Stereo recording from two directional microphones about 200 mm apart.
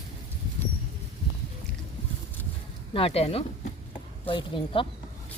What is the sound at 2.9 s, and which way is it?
Speech, 30° left (ahead or behind).